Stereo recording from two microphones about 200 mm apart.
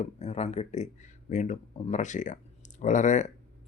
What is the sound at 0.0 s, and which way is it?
Speech, 30° left (ahead or behind).